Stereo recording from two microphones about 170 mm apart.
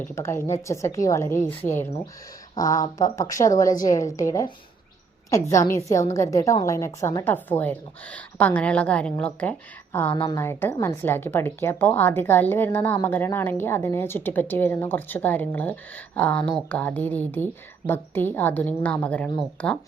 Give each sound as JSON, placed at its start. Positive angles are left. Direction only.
{"t": 0.0, "sound": "a woman's voice", "side_deg": 15}
{"t": 10.2, "sound": "a woman's voice", "side_deg": 25}
{"t": 10.4, "sound": "speech", "side_deg": 15}